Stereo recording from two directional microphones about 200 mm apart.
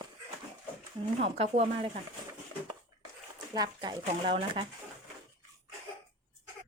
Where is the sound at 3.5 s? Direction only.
20° right (ahead or behind).